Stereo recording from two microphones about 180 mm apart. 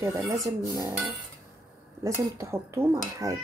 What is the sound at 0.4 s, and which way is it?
Speech, 20° right (ahead or behind).